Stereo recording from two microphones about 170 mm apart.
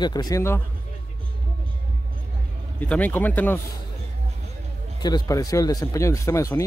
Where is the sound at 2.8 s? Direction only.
10° left (ahead or behind).